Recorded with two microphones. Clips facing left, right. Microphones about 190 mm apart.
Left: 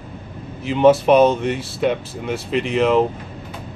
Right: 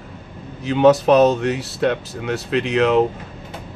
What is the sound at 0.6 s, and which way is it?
Speech, centre (ahead or behind).